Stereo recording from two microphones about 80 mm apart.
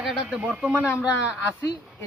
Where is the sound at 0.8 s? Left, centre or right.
Left.